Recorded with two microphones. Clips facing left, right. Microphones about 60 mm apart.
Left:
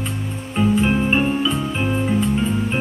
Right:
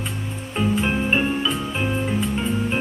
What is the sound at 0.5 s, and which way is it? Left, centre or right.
Music, centre.